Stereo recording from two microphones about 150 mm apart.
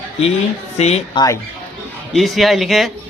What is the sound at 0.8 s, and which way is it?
Speech, 45° left (ahead or behind).